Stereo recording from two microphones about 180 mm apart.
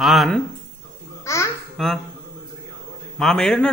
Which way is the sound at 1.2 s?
15° left (ahead or behind).